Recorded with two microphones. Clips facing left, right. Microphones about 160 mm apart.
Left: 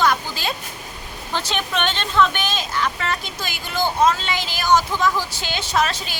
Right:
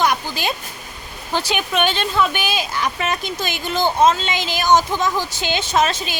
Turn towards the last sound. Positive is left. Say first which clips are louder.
# right 3 dB
turn(degrees=-20)  # may be behind; listen again after turning